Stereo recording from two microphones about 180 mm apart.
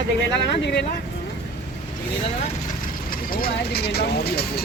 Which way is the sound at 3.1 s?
55° left (ahead or behind).